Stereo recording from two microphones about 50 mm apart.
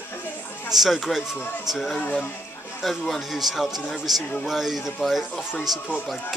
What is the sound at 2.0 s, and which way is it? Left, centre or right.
Speech, left.